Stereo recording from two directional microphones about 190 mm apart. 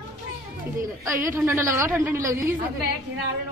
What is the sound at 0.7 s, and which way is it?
Speech, 15° right (ahead or behind).